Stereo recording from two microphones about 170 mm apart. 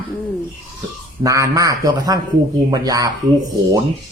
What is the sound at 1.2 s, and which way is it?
Speech, 20° right (ahead or behind).